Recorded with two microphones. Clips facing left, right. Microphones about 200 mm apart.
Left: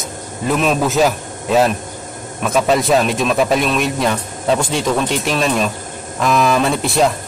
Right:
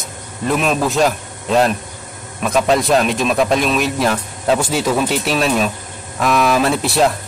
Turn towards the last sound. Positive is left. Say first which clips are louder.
# even
turn(degrees=0)  # may be behind; listen again after turning